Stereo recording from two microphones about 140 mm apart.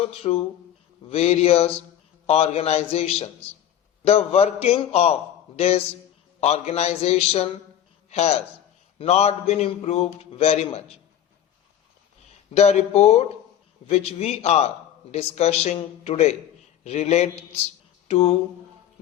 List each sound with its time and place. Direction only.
0.0 s a man's voice: 45° left (ahead or behind)
12.5 s a man's voice: 50° left (ahead or behind)